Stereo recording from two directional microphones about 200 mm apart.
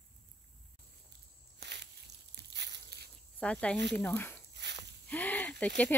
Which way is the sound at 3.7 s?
60° right (ahead or behind).